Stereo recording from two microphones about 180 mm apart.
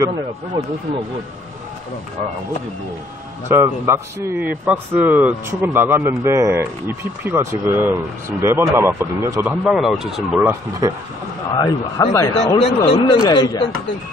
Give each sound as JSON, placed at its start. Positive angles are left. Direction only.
{"t": 3.4, "sound": "speech", "side_deg": -15}
{"t": 11.5, "sound": "a man's voice", "side_deg": 15}
{"t": 12.5, "sound": "speech", "side_deg": 35}
{"t": 13.2, "sound": "speech", "side_deg": 20}